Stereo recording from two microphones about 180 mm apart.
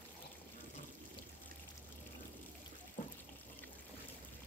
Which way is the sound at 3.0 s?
45° left (ahead or behind).